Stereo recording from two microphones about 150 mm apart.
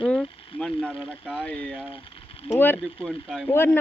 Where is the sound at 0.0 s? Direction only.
5° left (ahead or behind).